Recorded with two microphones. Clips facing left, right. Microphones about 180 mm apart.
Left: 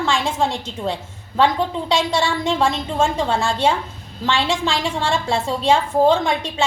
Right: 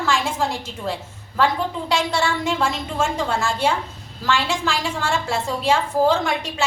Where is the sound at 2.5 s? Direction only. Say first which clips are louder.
Left 3 dB; 30° left (ahead or behind).